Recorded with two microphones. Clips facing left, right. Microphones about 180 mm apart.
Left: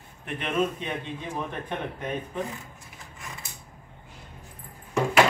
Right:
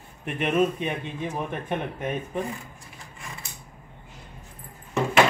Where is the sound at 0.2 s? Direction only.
15° right (ahead or behind).